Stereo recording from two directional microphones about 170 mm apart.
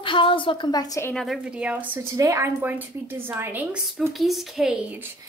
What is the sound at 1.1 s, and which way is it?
A woman's voice, centre (ahead or behind).